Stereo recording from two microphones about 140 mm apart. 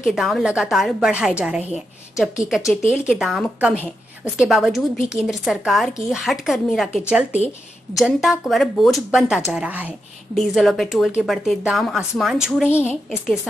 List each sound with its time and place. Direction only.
0.0 s speech: 5° right (ahead or behind)
2.4 s speech: centre (ahead or behind)
12.7 s a woman's voice: 15° left (ahead or behind)